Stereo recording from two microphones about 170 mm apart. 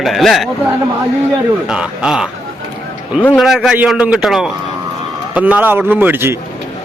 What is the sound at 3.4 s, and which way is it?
A man's voice, centre (ahead or behind).